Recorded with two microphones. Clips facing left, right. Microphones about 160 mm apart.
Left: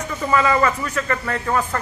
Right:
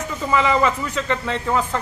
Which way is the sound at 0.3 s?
15° right (ahead or behind).